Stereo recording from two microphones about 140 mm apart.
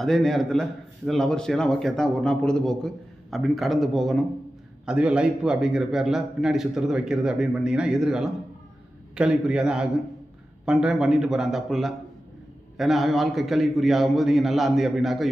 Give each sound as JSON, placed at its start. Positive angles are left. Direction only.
{"t": 0.0, "sound": "a man's voice", "side_deg": 0}